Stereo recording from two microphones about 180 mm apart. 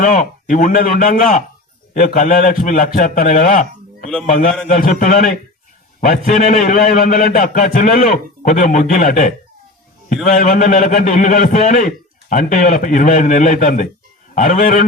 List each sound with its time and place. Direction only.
0.0 s a man's voice: 45° left (ahead or behind)